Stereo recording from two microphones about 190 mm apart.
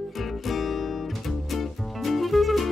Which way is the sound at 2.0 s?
Centre (ahead or behind).